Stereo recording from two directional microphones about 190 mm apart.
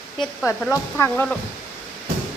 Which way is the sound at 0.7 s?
10° left (ahead or behind).